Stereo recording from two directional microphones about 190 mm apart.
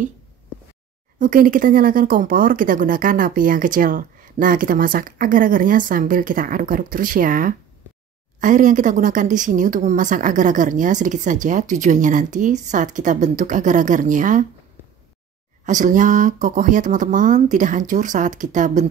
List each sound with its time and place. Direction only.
1.2 s speech: 45° right (ahead or behind)
15.6 s speech: 40° right (ahead or behind)